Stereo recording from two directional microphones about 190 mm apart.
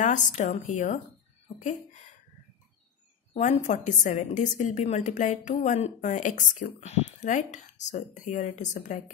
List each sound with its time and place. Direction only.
0.0 s a woman's voice: 40° left (ahead or behind)
3.3 s a woman's voice: 40° left (ahead or behind)